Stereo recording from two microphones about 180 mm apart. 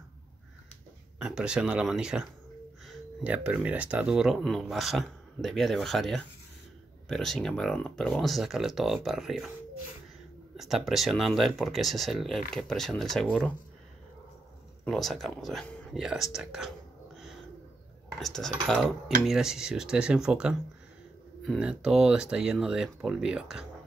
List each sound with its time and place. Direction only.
1.2 s speech: 5° right (ahead or behind)
10.6 s speech: centre (ahead or behind)
14.9 s speech: centre (ahead or behind)